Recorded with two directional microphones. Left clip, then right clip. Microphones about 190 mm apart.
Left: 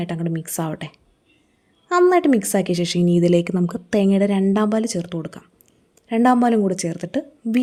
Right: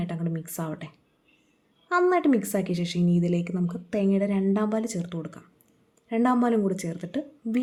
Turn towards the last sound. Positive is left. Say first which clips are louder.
# left 7 dB
turn(degrees=30)  # may be behind; listen again after turning